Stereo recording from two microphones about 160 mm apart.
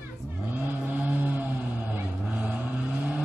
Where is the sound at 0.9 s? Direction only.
10° right (ahead or behind).